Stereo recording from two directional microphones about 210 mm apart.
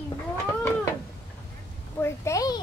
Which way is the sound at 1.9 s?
10° left (ahead or behind).